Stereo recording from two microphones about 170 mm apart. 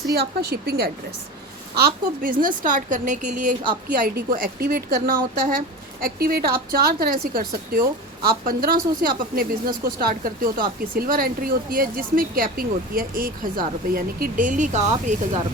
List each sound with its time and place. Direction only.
0.1 s a woman's voice: 70° right (ahead or behind)
2.4 s a woman's voice: 50° right (ahead or behind)